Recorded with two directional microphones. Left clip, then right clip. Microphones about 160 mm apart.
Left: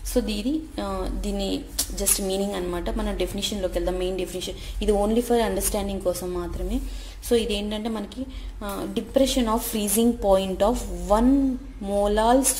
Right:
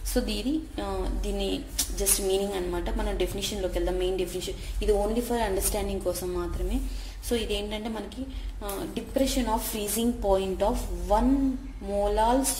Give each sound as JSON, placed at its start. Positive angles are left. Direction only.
{"t": 0.1, "sound": "a woman's voice", "side_deg": 20}
{"t": 0.7, "sound": "speech", "side_deg": 35}
{"t": 8.7, "sound": "speech", "side_deg": 45}